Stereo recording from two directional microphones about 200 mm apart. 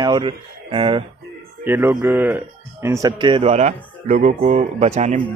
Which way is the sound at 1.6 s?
10° right (ahead or behind).